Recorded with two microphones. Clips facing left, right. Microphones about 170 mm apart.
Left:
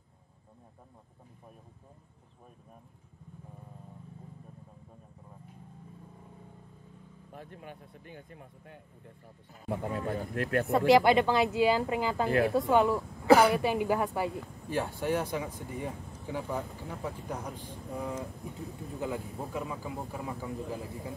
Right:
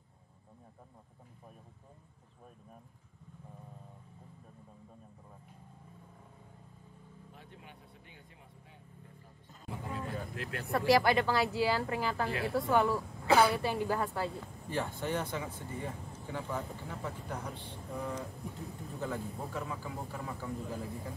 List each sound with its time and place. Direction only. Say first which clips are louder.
7.3 s speech: left 11 dB; 50° left (ahead or behind)
10.9 s a woman's voice: left 4 dB; 20° left (ahead or behind)